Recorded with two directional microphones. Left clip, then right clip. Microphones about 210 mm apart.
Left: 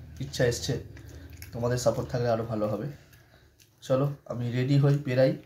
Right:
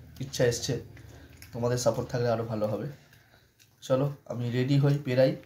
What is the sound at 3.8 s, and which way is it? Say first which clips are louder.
Speech: even; 5° right (ahead or behind).